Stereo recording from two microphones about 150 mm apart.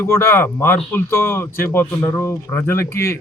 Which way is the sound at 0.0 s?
15° left (ahead or behind).